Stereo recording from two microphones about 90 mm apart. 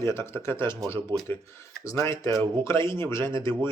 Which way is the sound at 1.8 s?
35° left (ahead or behind).